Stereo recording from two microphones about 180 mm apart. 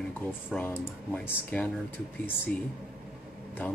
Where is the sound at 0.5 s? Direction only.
10° left (ahead or behind).